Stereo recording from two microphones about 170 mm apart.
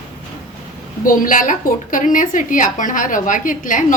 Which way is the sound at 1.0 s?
55° left (ahead or behind).